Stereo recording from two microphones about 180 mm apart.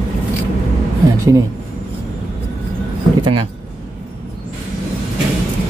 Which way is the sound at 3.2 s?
30° right (ahead or behind).